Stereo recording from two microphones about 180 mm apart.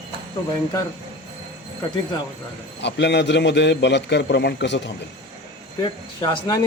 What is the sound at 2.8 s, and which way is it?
A man's voice, 75° left (ahead or behind).